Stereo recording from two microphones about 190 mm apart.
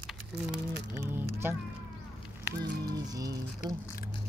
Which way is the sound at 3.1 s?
20° right (ahead or behind).